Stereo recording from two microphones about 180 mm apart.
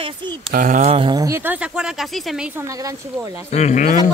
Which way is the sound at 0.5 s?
45° right (ahead or behind).